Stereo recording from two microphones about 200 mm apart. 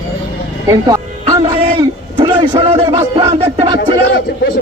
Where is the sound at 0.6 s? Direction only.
20° right (ahead or behind).